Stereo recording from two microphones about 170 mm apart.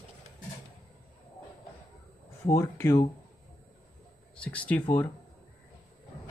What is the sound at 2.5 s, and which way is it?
Speech, 15° left (ahead or behind).